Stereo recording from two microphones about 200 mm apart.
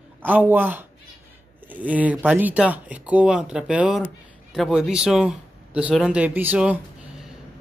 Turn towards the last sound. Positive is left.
turn(degrees=-5)  # may be behind; listen again after turning